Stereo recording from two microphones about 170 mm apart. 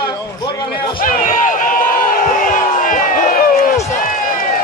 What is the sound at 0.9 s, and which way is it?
Crowd, 55° left (ahead or behind).